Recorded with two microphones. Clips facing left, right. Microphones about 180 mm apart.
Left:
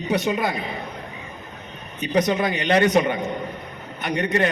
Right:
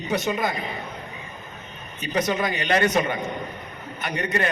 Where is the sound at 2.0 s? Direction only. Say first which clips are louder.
Left 4 dB; 15° left (ahead or behind).